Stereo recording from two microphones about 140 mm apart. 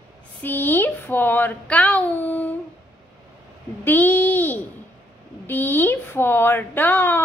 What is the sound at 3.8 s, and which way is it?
A woman's voice, 15° left (ahead or behind).